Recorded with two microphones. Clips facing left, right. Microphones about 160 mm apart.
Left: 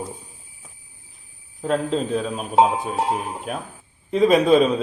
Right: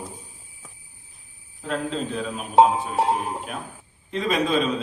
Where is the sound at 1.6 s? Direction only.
40° left (ahead or behind).